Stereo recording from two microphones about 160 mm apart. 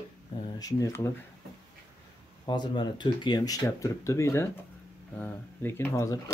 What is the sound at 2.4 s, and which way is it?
Speech, 25° left (ahead or behind).